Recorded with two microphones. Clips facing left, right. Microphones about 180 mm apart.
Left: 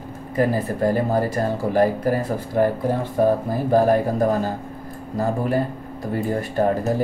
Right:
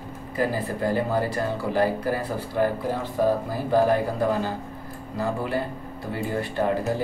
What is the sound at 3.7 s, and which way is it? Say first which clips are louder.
Speech: left 3 dB; 45° left (ahead or behind).